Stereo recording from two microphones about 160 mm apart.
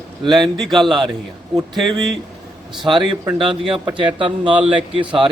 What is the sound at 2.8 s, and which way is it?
A man's voice, 30° right (ahead or behind).